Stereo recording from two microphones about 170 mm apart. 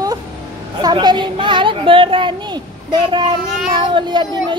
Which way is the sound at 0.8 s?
25° right (ahead or behind).